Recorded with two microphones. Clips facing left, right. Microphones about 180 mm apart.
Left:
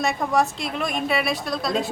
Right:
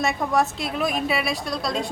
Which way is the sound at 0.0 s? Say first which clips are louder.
Even; centre (ahead or behind).